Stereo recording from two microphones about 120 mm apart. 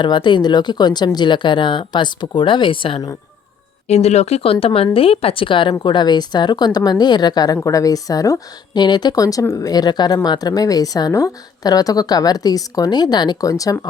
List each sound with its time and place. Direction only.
0.0 s a woman's voice: 40° left (ahead or behind)
3.8 s a woman's voice: 65° left (ahead or behind); by 13.8 s 30° left (ahead or behind)